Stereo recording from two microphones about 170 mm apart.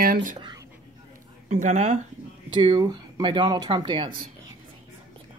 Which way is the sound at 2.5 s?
25° right (ahead or behind).